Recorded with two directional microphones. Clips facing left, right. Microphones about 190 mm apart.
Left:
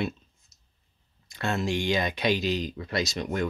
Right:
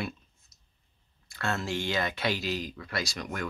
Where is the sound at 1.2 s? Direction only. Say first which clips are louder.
Left 4 dB; 20° left (ahead or behind).